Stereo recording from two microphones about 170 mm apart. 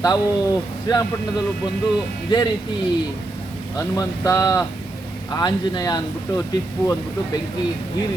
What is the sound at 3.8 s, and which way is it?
Speech, 20° left (ahead or behind).